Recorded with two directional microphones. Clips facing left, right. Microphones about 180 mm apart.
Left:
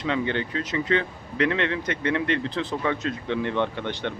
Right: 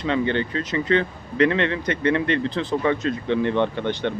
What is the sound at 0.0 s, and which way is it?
Speech, 5° left (ahead or behind).